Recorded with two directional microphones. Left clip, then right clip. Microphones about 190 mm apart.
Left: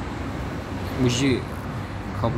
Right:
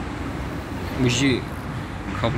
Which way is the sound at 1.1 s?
15° left (ahead or behind).